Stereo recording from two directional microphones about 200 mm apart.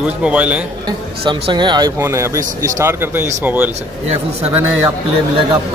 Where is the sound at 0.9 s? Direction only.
25° right (ahead or behind).